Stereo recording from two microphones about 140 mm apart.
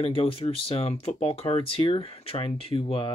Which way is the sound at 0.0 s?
45° left (ahead or behind).